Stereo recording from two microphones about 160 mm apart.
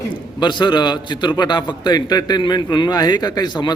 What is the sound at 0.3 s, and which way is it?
A man's voice, 30° left (ahead or behind).